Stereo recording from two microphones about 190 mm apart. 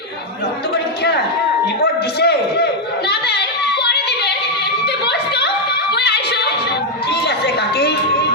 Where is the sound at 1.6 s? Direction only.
60° left (ahead or behind).